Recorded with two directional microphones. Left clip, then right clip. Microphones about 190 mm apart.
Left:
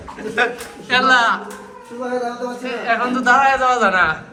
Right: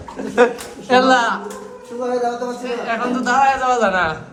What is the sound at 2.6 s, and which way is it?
A man's voice, 15° right (ahead or behind).